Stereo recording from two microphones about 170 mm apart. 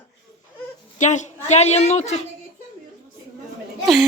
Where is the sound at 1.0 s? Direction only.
45° left (ahead or behind).